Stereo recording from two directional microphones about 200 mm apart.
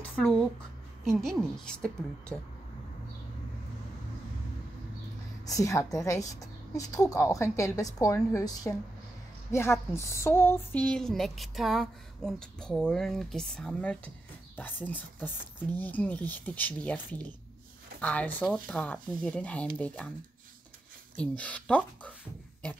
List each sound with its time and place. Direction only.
0.0 s speech: 5° left (ahead or behind)
5.4 s a woman's voice: 15° left (ahead or behind)
21.2 s a woman's voice: 5° left (ahead or behind)